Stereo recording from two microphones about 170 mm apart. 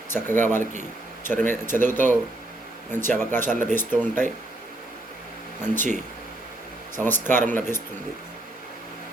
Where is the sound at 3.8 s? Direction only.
10° left (ahead or behind).